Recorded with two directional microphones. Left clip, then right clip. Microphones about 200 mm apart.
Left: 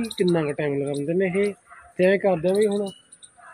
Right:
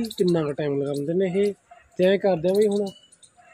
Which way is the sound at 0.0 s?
15° right (ahead or behind).